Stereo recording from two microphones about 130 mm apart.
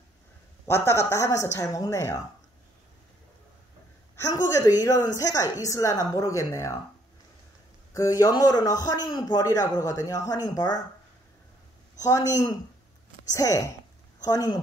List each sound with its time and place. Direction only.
0.7 s a man's voice: 20° left (ahead or behind)
4.3 s a man's voice: 30° left (ahead or behind)
7.9 s a man's voice: 25° left (ahead or behind)
12.0 s a man's voice: 25° left (ahead or behind)